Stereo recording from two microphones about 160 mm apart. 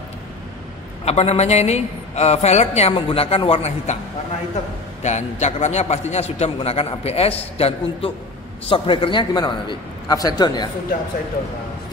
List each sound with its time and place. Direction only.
1.0 s a man's voice: 40° left (ahead or behind)
5.0 s a man's voice: 45° left (ahead or behind); by 10.7 s 25° left (ahead or behind)